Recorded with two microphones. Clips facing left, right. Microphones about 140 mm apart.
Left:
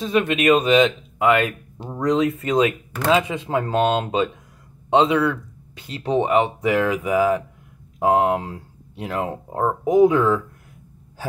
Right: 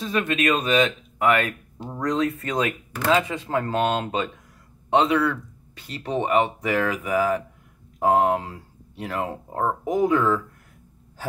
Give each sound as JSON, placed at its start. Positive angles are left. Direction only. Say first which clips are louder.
{"t": 0.0, "sound": "speech", "louder": "left 4 dB", "side_deg": 20}